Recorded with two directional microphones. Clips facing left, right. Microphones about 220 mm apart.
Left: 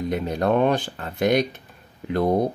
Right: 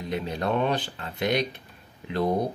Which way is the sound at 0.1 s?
45° left (ahead or behind).